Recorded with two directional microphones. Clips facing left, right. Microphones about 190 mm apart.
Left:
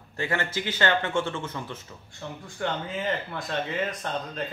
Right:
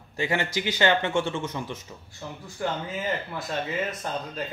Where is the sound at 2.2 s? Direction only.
5° right (ahead or behind).